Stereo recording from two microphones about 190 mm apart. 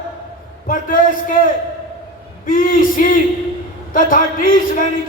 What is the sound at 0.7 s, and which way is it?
Speech, 45° left (ahead or behind).